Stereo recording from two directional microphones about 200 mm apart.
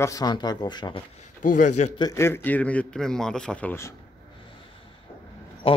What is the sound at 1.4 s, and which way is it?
Speech, 40° left (ahead or behind).